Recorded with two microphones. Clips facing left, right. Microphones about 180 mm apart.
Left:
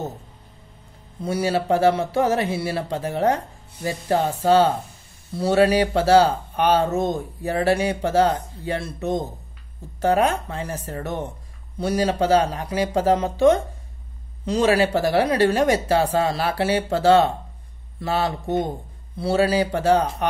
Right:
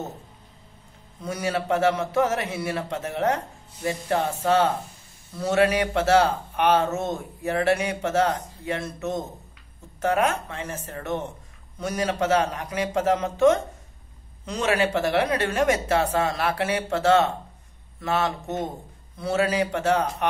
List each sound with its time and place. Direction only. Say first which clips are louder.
1.2 s speech: left 5 dB; 30° left (ahead or behind)